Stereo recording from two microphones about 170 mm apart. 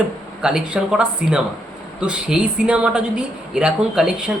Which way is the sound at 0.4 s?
5° right (ahead or behind).